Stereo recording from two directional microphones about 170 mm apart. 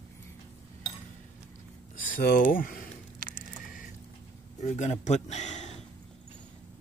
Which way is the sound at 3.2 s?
55° right (ahead or behind).